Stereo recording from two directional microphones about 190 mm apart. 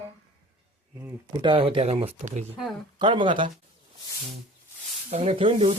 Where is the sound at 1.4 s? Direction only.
25° right (ahead or behind).